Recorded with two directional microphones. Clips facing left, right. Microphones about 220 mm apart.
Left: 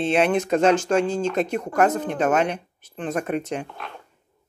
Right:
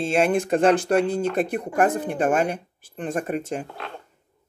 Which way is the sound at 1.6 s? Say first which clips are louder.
Left 1 dB; 15° right (ahead or behind).